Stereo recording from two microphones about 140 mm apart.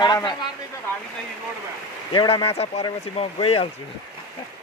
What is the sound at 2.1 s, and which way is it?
Speech, 35° left (ahead or behind).